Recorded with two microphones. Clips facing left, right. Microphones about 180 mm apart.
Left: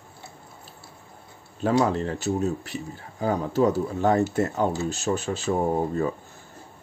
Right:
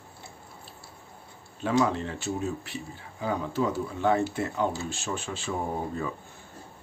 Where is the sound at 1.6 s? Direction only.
40° left (ahead or behind).